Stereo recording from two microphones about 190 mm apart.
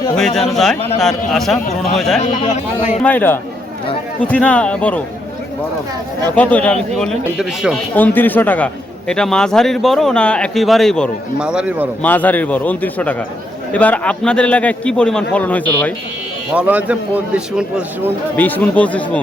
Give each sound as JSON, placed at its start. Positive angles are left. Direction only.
{"t": 0.2, "sound": "a man's voice", "side_deg": 0}
{"t": 2.4, "sound": "speech", "side_deg": 40}
{"t": 3.0, "sound": "a man's voice", "side_deg": 10}
{"t": 6.3, "sound": "a man's voice", "side_deg": 5}
{"t": 7.9, "sound": "a man's voice", "side_deg": 10}
{"t": 12.0, "sound": "a man's voice", "side_deg": 10}
{"t": 16.6, "sound": "a man's voice", "side_deg": -10}
{"t": 18.3, "sound": "a man's voice", "side_deg": 10}